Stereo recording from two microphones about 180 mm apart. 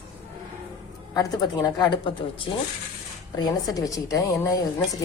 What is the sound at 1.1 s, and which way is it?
A woman's voice, 20° left (ahead or behind).